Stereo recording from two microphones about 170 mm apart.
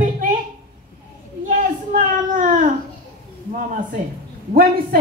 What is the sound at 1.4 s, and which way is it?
Speech, 50° right (ahead or behind).